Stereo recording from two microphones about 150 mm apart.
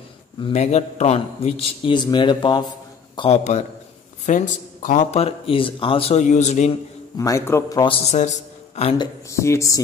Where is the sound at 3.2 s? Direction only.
45° left (ahead or behind).